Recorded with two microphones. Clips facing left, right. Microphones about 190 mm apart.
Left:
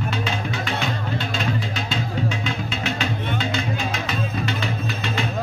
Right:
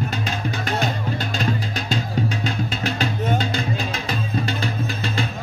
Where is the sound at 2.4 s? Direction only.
40° right (ahead or behind).